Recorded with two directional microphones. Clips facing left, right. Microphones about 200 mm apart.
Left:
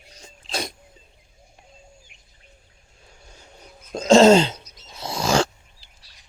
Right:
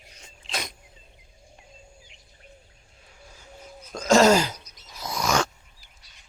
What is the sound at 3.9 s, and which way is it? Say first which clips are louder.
Groan: left 5 dB; 25° left (ahead or behind).